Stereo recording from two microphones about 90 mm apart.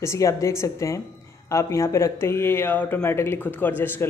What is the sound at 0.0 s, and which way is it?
A woman's voice, 35° left (ahead or behind).